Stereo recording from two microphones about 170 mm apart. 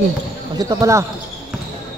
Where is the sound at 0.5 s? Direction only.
20° right (ahead or behind).